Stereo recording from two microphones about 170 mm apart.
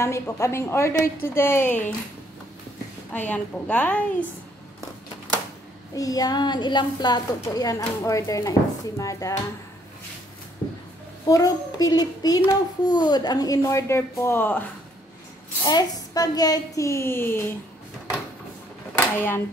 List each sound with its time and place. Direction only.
0.0 s a woman's voice: 15° left (ahead or behind)
3.1 s a woman's voice: 10° left (ahead or behind)
5.9 s a woman's voice: 20° left (ahead or behind)
11.2 s a woman's voice: 20° left (ahead or behind)
15.6 s a woman's voice: 20° left (ahead or behind)
18.9 s speech: 10° left (ahead or behind)